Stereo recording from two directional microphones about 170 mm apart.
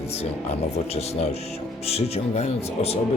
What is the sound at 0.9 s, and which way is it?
Speech, 40° left (ahead or behind).